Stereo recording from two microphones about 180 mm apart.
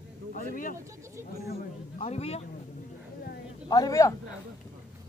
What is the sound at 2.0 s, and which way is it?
Speech, 35° left (ahead or behind).